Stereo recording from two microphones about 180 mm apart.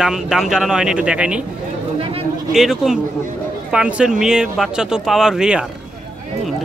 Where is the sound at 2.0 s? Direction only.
30° right (ahead or behind).